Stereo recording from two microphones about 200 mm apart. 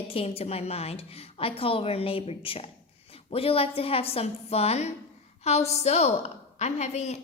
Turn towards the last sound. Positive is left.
turn(degrees=35)  # may be behind; listen again after turning